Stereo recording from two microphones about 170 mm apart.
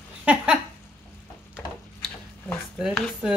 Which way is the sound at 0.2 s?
5° right (ahead or behind).